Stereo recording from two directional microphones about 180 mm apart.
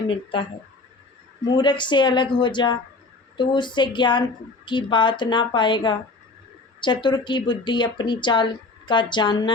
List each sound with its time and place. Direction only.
0.1 s speech: 30° left (ahead or behind)
1.5 s speech: 25° left (ahead or behind)